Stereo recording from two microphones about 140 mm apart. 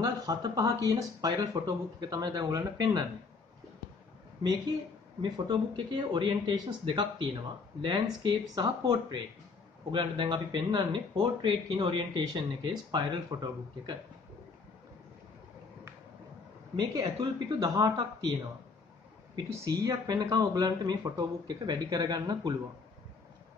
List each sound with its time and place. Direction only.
0.0 s speech: 25° right (ahead or behind)
5.5 s speech: 35° right (ahead or behind)
16.7 s speech: 25° right (ahead or behind)
19.3 s speech: 25° right (ahead or behind)